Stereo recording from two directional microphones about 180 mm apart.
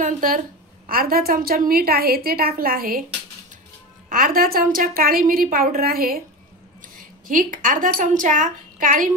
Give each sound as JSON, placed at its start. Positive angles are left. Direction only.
{"t": 0.0, "sound": "a woman's voice", "side_deg": -50}
{"t": 4.1, "sound": "a woman's voice", "side_deg": -50}
{"t": 7.2, "sound": "a woman's voice", "side_deg": -50}